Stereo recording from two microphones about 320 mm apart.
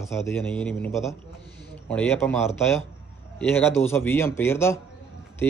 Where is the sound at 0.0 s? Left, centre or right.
Centre.